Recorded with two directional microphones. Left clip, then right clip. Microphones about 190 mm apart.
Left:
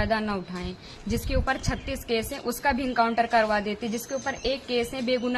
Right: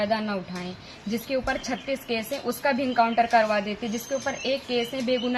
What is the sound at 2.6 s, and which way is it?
A woman's voice, 20° left (ahead or behind).